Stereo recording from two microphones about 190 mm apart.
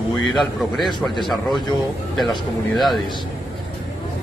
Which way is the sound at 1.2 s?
Centre (ahead or behind).